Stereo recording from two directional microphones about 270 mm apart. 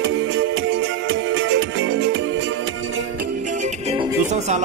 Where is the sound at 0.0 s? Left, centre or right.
Right.